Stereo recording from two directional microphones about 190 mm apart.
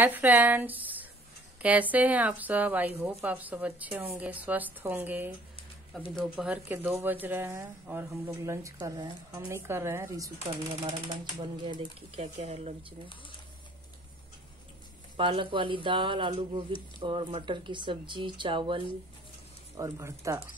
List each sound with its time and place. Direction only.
0.0 s speech: 10° right (ahead or behind)
5.9 s speech: centre (ahead or behind); by 12.7 s 35° right (ahead or behind)
15.1 s speech: 25° right (ahead or behind)
19.8 s speech: 15° right (ahead or behind)